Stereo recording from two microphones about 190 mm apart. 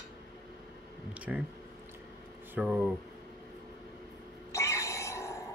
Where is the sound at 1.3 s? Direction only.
5° right (ahead or behind).